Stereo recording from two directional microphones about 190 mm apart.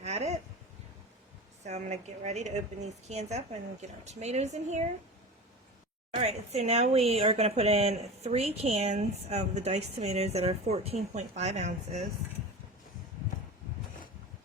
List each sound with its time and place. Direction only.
0.0 s a sound: 35° right (ahead or behind)
1.6 s speech: 35° right (ahead or behind)
6.1 s speech: 35° right (ahead or behind)